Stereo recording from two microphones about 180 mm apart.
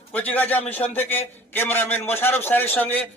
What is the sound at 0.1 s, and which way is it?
A man's voice, 10° left (ahead or behind).